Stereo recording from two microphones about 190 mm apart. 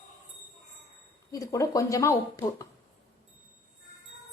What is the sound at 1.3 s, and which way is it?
A woman's voice, 20° left (ahead or behind).